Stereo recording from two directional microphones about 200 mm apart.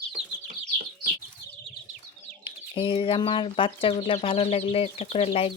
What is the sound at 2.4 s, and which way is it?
Speech, 25° left (ahead or behind).